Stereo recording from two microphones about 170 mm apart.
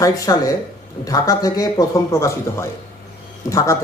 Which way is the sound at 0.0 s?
20° left (ahead or behind).